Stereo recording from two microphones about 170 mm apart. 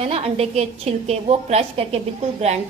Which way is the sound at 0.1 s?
35° right (ahead or behind).